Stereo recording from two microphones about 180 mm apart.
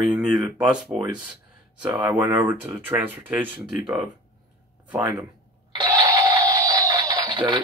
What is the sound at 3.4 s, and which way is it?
Speech, 25° right (ahead or behind).